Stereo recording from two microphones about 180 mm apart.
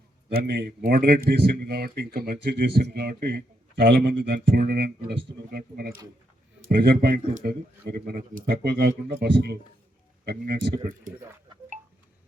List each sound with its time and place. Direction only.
0.3 s speech: 60° right (ahead or behind)